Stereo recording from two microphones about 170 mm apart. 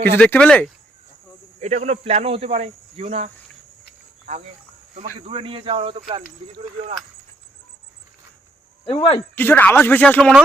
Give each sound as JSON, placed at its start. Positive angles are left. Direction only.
{"t": 0.0, "sound": "speech", "side_deg": 10}
{"t": 1.6, "sound": "speech", "side_deg": -40}
{"t": 4.9, "sound": "speech", "side_deg": -35}
{"t": 8.9, "sound": "speech", "side_deg": 30}
{"t": 9.1, "sound": "speech", "side_deg": 10}